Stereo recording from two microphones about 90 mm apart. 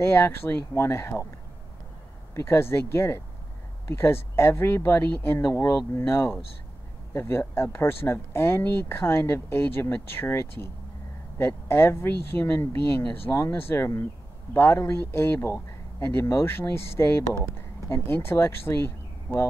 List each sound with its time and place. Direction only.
0.0 s speech: 30° left (ahead or behind)
2.3 s speech: 30° left (ahead or behind)